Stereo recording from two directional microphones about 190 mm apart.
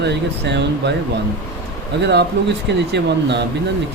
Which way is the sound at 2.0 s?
65° right (ahead or behind).